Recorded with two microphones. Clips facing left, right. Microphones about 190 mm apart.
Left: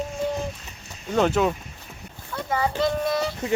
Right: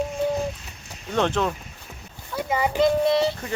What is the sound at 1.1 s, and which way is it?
Speech, 5° left (ahead or behind).